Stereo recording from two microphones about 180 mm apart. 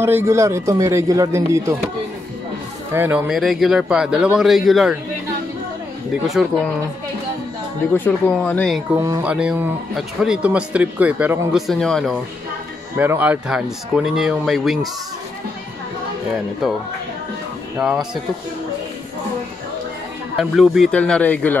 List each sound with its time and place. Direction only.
0.0 s speech: 15° right (ahead or behind)
2.9 s speech: 10° right (ahead or behind)
6.2 s speech: centre (ahead or behind)
7.9 s speech: 10° left (ahead or behind)
8.9 s speech: 20° right (ahead or behind)
9.2 s speech: 5° right (ahead or behind)
12.9 s speech: 10° right (ahead or behind)
16.6 s speech: centre (ahead or behind)
20.3 s speech: centre (ahead or behind)